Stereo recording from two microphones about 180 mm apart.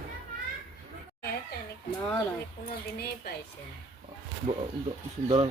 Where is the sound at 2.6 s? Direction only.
60° left (ahead or behind).